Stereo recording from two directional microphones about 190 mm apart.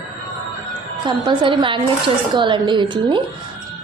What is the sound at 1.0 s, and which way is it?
Speech, 25° right (ahead or behind).